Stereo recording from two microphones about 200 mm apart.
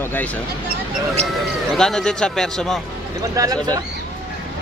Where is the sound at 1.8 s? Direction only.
5° left (ahead or behind).